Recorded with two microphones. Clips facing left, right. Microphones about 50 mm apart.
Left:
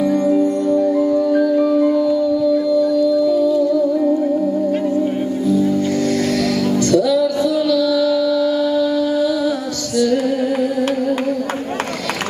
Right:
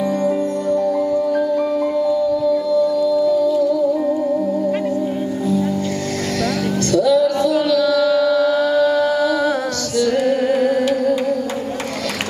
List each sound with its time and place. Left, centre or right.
0.0 s music: centre
0.9 s music: centre
6.8 s music: centre
7.6 s music: right